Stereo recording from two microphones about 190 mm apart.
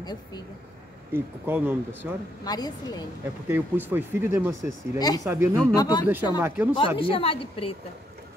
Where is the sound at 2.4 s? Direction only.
20° left (ahead or behind).